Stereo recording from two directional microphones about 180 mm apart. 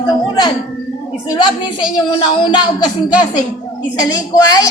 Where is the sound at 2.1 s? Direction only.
25° left (ahead or behind).